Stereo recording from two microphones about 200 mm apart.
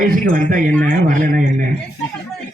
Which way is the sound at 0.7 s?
5° left (ahead or behind).